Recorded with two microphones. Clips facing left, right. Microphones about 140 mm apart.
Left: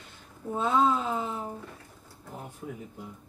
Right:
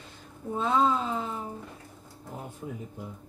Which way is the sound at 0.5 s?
Centre (ahead or behind).